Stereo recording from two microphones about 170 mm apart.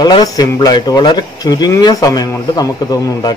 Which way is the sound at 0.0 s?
20° left (ahead or behind).